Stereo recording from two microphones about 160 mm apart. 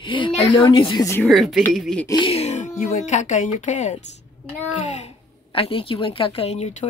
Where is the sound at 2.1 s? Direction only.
30° left (ahead or behind).